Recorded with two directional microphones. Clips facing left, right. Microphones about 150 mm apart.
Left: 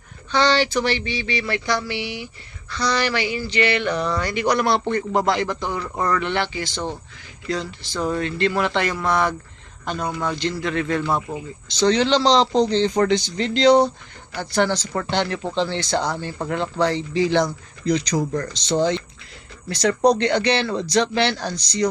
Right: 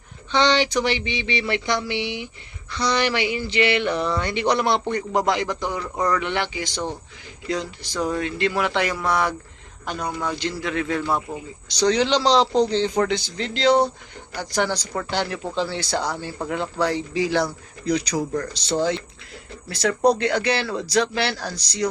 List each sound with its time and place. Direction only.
0.3 s a man's voice: 20° right (ahead or behind); by 21.8 s 5° right (ahead or behind)